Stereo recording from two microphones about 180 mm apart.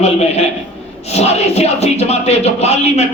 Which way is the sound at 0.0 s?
35° left (ahead or behind).